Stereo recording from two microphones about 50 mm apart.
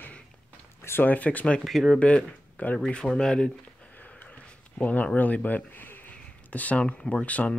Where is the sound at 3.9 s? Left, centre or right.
Left.